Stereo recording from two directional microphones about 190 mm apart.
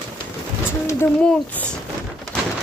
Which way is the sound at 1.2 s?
5° left (ahead or behind).